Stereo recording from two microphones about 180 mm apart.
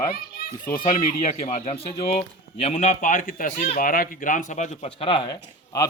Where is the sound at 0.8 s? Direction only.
35° left (ahead or behind).